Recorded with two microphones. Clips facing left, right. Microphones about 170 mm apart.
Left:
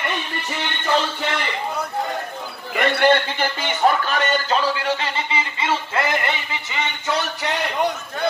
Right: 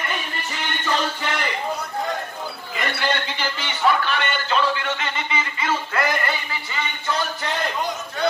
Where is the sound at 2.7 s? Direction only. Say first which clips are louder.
Left 9 dB; 55° left (ahead or behind); by 6.3 s 25° left (ahead or behind).